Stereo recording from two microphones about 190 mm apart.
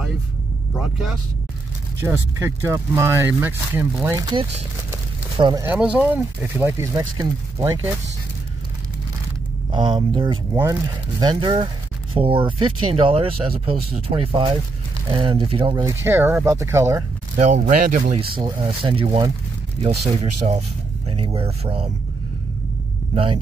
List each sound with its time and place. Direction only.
0.7 s speech: centre (ahead or behind)
2.3 s speech: 15° right (ahead or behind)
5.7 s speech: 5° right (ahead or behind)
9.7 s speech: 25° right (ahead or behind)
17.4 s speech: 40° right (ahead or behind)
18.1 s speech: 30° right (ahead or behind)
23.1 s speech: 30° right (ahead or behind)